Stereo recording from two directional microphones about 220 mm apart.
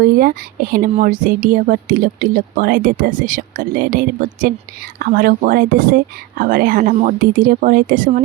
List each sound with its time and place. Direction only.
0.0 s speech: 40° right (ahead or behind)